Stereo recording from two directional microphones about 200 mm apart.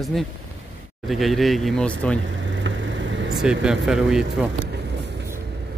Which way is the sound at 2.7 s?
70° right (ahead or behind).